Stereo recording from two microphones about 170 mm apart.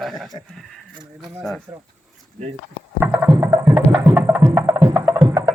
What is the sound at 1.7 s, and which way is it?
Speech, 10° right (ahead or behind).